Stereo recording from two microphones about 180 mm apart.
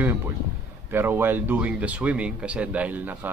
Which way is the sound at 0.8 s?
10° right (ahead or behind).